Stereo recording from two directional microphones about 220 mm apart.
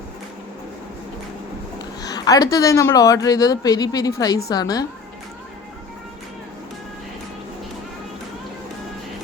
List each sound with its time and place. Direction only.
2.0 s speech: 15° left (ahead or behind)